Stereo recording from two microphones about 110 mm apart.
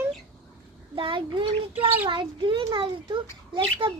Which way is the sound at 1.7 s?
15° right (ahead or behind).